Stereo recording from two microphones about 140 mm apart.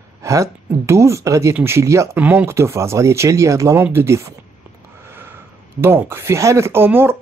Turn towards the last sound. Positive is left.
turn(degrees=-15)  # may be behind; listen again after turning